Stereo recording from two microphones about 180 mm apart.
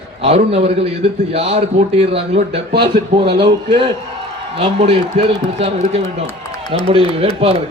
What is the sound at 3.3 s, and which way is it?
A man's voice, 30° right (ahead or behind).